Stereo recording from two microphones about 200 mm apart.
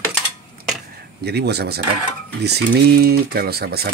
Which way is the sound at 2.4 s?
50° right (ahead or behind).